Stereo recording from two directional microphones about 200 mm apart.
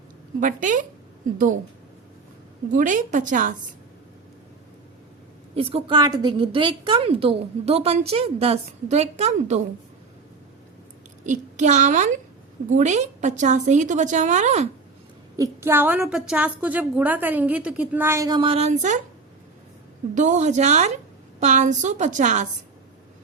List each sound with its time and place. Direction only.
0.3 s a woman's voice: 40° right (ahead or behind)
2.7 s a woman's voice: 40° right (ahead or behind)
5.5 s a woman's voice: 30° right (ahead or behind)
11.2 s a child's voice: 35° right (ahead or behind)
15.4 s a woman's voice: 10° right (ahead or behind); by 18.9 s 35° right (ahead or behind)
20.1 s a woman's voice: 35° right (ahead or behind)